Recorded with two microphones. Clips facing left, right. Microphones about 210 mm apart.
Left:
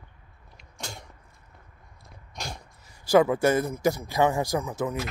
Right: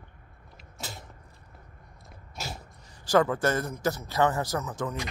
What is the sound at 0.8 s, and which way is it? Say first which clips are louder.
Creak: left 1 dB; 5° right (ahead or behind).